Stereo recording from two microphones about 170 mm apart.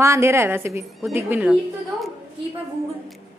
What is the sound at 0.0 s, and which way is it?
A woman's voice, 15° right (ahead or behind).